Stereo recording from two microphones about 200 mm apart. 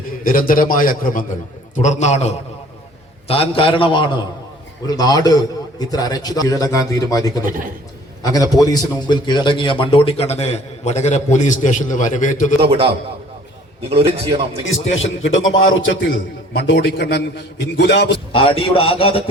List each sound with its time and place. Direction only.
0.3 s a man's voice: 45° left (ahead or behind); by 7.4 s 15° left (ahead or behind)
7.4 s a man's voice: 45° right (ahead or behind)
8.2 s a man's voice: 20° left (ahead or behind); by 12.5 s 40° left (ahead or behind)
12.6 s a man's voice: 30° right (ahead or behind)
13.9 s a man's voice: 25° right (ahead or behind)
14.9 s speech: 75° left (ahead or behind)
15.9 s a man's voice: 60° left (ahead or behind)
18.3 s a man's voice: 25° left (ahead or behind)